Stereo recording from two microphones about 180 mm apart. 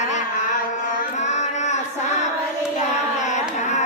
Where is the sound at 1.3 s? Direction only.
40° left (ahead or behind).